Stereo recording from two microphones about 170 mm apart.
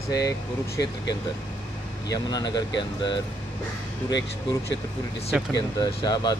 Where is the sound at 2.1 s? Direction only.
25° left (ahead or behind).